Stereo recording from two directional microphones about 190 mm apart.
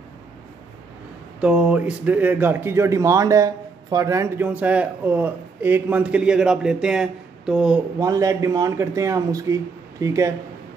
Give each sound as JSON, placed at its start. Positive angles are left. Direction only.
{"t": 1.4, "sound": "speech", "side_deg": -5}
{"t": 8.0, "sound": "speech", "side_deg": -15}